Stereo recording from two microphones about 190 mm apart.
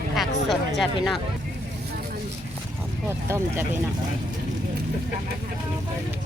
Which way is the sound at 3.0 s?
10° right (ahead or behind).